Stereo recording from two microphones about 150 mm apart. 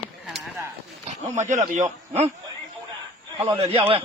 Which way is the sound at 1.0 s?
55° right (ahead or behind).